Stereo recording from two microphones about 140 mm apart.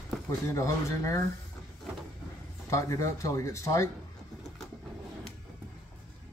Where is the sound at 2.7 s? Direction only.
20° left (ahead or behind).